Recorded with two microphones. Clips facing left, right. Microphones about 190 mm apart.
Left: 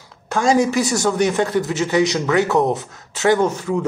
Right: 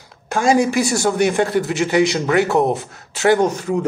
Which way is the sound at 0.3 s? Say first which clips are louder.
Right 1 dB; 10° right (ahead or behind).